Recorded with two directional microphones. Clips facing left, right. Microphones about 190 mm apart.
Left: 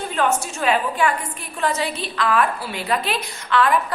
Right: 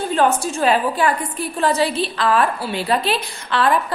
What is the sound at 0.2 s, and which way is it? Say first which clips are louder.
A woman's voice: right 3 dB; 35° right (ahead or behind).